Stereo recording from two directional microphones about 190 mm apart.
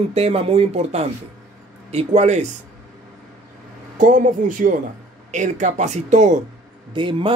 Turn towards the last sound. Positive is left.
turn(degrees=-25)  # may be behind; listen again after turning